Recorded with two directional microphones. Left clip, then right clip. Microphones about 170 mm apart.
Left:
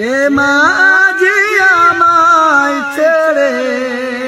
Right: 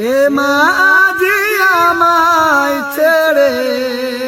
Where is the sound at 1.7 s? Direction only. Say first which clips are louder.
Left 2 dB; 35° right (ahead or behind).